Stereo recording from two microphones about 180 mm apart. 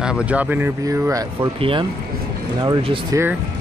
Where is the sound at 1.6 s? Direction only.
30° right (ahead or behind).